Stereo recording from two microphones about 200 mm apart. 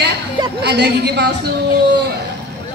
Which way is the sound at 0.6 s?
55° right (ahead or behind).